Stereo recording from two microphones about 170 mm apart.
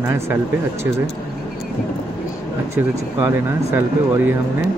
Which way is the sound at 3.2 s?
15° right (ahead or behind).